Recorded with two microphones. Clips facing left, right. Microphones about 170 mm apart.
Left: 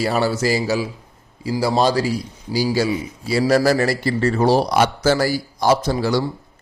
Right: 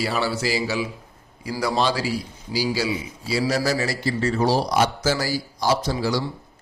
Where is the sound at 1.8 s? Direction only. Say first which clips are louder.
Left 5 dB; 45° left (ahead or behind).